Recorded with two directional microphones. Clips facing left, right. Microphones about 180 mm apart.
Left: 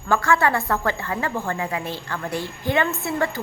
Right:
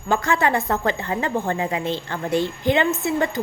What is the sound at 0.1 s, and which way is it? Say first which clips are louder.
A woman's voice: even; 20° right (ahead or behind).